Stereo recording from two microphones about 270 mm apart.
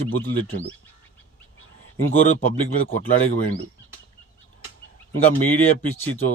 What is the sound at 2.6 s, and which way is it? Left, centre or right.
Speech, left.